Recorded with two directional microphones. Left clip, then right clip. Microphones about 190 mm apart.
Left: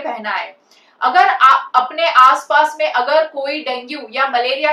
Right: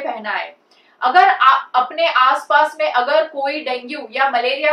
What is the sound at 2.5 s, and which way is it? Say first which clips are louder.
A woman's voice: left 1 dB; 5° left (ahead or behind).